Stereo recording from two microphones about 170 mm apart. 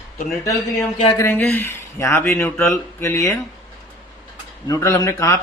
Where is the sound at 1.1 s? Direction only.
10° left (ahead or behind).